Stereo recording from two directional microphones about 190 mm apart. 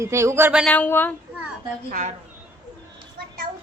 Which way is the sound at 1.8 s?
45° right (ahead or behind).